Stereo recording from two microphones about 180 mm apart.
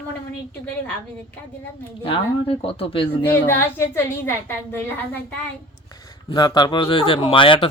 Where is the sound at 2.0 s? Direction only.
30° left (ahead or behind).